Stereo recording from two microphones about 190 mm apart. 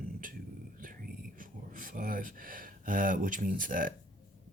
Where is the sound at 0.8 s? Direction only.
45° right (ahead or behind).